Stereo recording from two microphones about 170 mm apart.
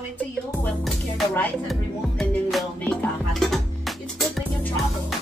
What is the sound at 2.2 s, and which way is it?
Music, centre (ahead or behind).